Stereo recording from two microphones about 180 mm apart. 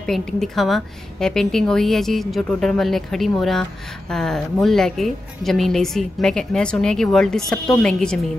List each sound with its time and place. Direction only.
0.0 s a woman's voice: centre (ahead or behind)